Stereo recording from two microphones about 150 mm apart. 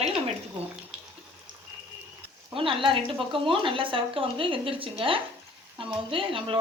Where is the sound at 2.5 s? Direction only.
35° right (ahead or behind).